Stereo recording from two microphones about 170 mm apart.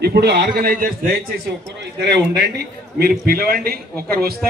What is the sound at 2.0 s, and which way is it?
A man's voice, 85° right.